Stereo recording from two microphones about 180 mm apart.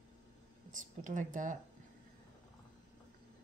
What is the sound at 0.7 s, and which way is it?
Speech, 45° right (ahead or behind).